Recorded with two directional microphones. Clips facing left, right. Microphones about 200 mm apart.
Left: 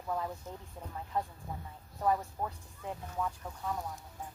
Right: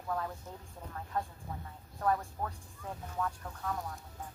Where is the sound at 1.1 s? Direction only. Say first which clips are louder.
Left 1 dB; 15° left (ahead or behind).